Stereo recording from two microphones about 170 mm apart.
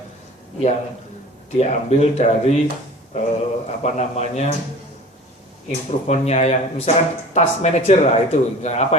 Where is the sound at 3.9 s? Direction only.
40° left (ahead or behind).